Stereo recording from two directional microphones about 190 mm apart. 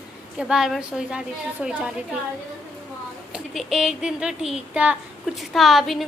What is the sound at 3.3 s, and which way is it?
Speech, centre (ahead or behind).